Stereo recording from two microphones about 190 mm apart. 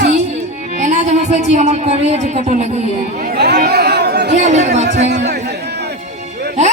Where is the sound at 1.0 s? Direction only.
40° right (ahead or behind).